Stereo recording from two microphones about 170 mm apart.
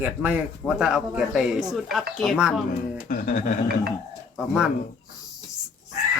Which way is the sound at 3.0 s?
50° left (ahead or behind).